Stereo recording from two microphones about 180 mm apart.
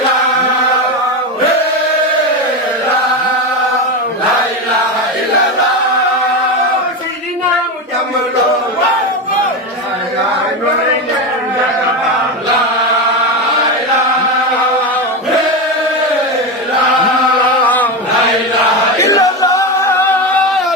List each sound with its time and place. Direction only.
17.6 s chant: 10° left (ahead or behind)
18.9 s singing: 15° left (ahead or behind)